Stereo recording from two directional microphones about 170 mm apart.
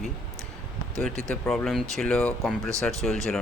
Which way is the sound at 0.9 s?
Centre (ahead or behind).